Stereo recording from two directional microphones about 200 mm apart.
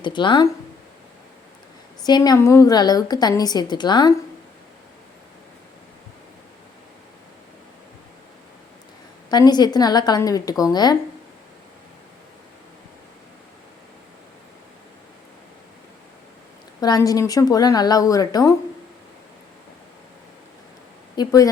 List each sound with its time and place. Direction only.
0.0 s a woman's voice: 25° left (ahead or behind)
2.0 s a woman's voice: 20° left (ahead or behind)
9.3 s a woman's voice: 20° left (ahead or behind)
16.8 s a woman's voice: 20° left (ahead or behind)
21.2 s a woman's voice: 15° left (ahead or behind)